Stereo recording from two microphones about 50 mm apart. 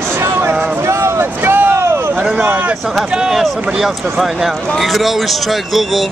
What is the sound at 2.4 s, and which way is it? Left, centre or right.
Speech, right.